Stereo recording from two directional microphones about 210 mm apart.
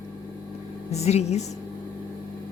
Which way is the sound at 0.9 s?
30° left (ahead or behind).